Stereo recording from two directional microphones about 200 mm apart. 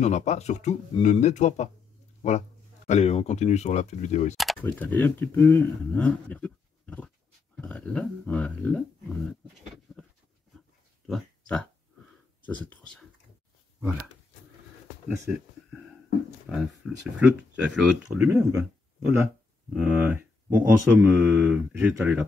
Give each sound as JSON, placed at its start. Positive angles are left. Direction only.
{"t": 0.0, "sound": "speech", "side_deg": 35}
{"t": 4.4, "sound": "speech", "side_deg": 5}
{"t": 11.1, "sound": "a sound", "side_deg": 5}
{"t": 15.0, "sound": "speech", "side_deg": -5}
{"t": 16.5, "sound": "speech", "side_deg": -5}